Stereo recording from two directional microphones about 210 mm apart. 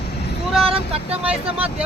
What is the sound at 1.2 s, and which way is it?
Speech, 5° right (ahead or behind).